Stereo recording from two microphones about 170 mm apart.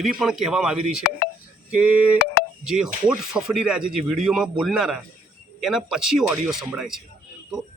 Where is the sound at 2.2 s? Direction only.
65° left (ahead or behind).